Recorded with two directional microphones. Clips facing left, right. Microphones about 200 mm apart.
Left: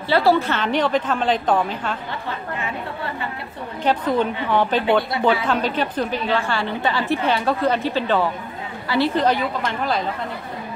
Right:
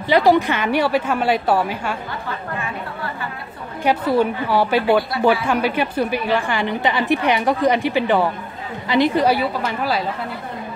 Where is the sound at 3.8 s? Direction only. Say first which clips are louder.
Right 2 dB; 10° right (ahead or behind).